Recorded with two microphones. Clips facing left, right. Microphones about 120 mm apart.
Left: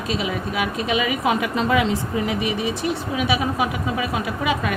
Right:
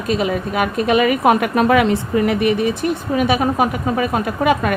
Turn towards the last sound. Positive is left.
turn(degrees=-50)  # may be behind; listen again after turning